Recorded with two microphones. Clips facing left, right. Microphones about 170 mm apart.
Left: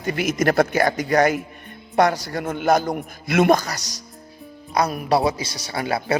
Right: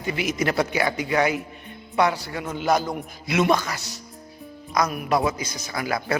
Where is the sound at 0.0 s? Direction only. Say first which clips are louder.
Left 4 dB; 50° left (ahead or behind).